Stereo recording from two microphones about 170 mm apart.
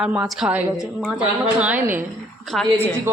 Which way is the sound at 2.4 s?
5° left (ahead or behind).